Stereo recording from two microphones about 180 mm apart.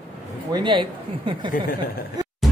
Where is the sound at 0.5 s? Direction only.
25° right (ahead or behind).